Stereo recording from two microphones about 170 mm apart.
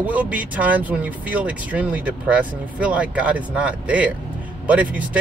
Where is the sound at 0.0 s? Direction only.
10° right (ahead or behind).